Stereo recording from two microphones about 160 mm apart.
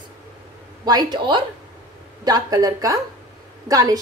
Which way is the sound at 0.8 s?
25° right (ahead or behind).